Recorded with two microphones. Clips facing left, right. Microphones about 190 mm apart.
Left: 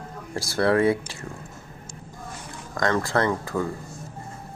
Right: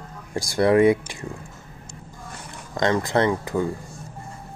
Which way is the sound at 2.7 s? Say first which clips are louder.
Right 2 dB; 20° right (ahead or behind).